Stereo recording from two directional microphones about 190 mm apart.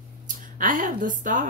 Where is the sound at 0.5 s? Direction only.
45° right (ahead or behind).